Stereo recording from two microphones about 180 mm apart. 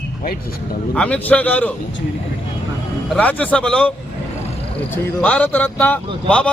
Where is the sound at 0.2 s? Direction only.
55° left (ahead or behind).